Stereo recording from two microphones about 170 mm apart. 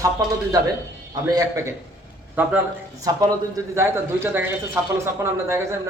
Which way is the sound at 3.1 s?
20° right (ahead or behind).